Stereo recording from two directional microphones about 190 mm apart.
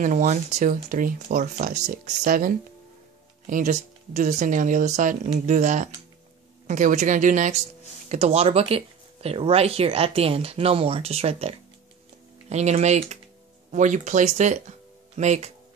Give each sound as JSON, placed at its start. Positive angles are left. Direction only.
{"t": 0.0, "sound": "speech", "side_deg": -40}